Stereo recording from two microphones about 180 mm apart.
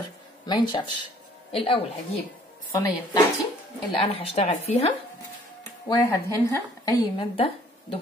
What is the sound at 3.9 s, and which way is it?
Speech, 30° left (ahead or behind).